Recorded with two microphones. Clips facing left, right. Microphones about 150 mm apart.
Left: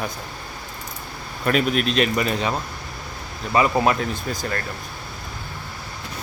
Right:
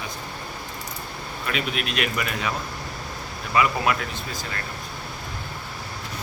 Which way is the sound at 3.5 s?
35° left (ahead or behind).